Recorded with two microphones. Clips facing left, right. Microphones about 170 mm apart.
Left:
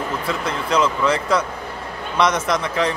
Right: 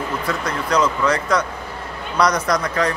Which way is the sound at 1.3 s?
30° left (ahead or behind).